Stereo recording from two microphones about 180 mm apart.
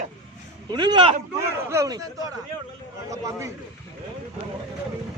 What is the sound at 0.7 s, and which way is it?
Speech, 25° right (ahead or behind).